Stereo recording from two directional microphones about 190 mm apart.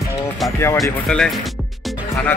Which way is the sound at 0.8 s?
5° left (ahead or behind).